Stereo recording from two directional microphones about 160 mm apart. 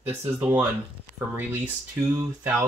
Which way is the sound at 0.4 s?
10° right (ahead or behind).